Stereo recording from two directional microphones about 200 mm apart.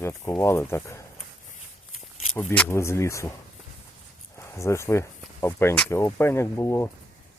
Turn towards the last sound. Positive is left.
turn(degrees=15)  # may be behind; listen again after turning